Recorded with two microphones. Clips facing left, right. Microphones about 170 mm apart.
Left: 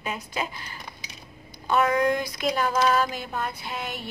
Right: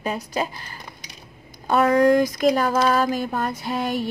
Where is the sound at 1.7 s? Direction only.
35° right (ahead or behind).